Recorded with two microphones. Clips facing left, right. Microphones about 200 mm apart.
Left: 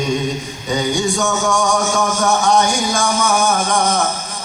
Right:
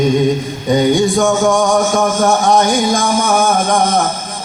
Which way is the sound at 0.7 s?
55° right (ahead or behind).